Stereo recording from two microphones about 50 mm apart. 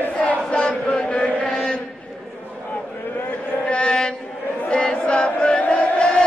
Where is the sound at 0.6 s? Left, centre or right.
Centre.